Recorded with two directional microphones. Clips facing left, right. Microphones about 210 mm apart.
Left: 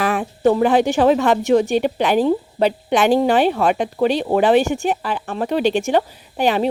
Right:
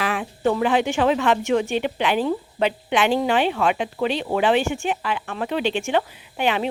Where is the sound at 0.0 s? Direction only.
45° left (ahead or behind).